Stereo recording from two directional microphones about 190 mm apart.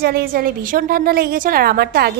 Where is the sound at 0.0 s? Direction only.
55° right (ahead or behind).